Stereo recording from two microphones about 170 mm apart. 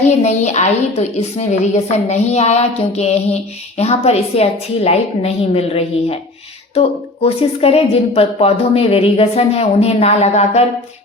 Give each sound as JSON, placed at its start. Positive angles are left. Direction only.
{"t": 0.0, "sound": "a woman's voice", "side_deg": 40}